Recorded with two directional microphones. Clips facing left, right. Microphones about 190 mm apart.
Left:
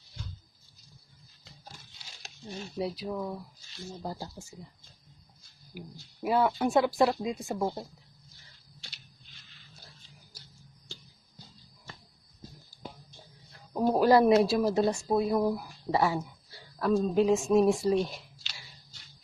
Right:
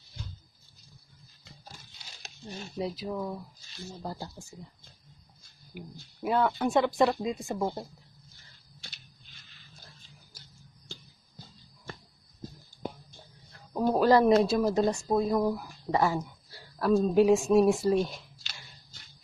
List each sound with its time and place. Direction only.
2.8 s speech: centre (ahead or behind)
3.9 s speech: 10° left (ahead or behind)
5.8 s speech: 5° left (ahead or behind)
11.9 s music: 55° right (ahead or behind)
13.7 s speech: 10° left (ahead or behind)